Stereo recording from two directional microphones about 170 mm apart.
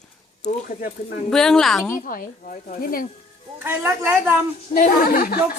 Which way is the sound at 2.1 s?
55° left (ahead or behind).